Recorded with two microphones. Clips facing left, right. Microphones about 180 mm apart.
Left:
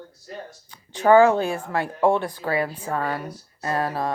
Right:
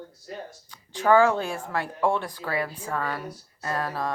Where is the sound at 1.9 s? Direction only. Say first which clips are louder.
Left 5 dB; 25° left (ahead or behind).